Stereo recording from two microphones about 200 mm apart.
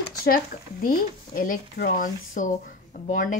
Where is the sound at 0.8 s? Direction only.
45° left (ahead or behind).